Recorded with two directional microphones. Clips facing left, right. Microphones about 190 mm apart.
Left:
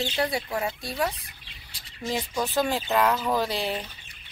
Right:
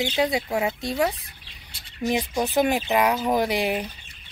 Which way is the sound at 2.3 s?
20° right (ahead or behind).